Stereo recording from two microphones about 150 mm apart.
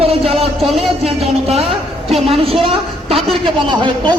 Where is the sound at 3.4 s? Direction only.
30° right (ahead or behind).